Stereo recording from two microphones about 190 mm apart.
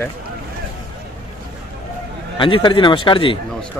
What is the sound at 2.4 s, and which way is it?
A man's voice, 25° left (ahead or behind).